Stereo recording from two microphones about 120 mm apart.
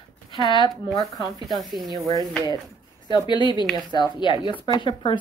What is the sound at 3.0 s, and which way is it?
Speech, 40° left (ahead or behind).